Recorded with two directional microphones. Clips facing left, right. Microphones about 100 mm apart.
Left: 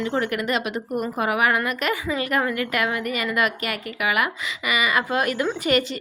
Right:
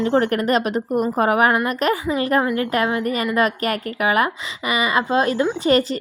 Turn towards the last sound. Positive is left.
turn(degrees=-35)  # may be behind; listen again after turning